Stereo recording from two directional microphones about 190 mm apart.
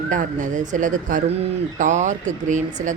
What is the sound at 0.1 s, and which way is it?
Speech, 40° right (ahead or behind).